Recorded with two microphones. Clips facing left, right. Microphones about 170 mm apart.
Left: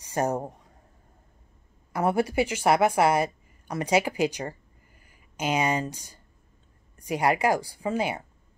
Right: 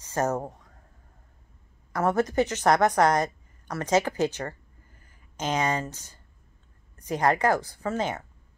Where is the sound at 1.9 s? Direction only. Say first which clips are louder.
Even; 10° left (ahead or behind).